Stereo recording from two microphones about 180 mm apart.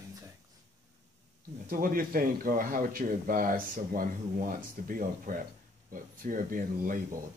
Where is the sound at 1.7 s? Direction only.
50° right (ahead or behind).